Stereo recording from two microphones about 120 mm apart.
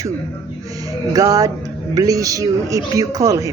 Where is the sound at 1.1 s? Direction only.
30° right (ahead or behind).